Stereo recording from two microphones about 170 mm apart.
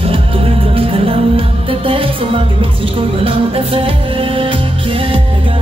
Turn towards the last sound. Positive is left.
turn(degrees=-30)  # may be behind; listen again after turning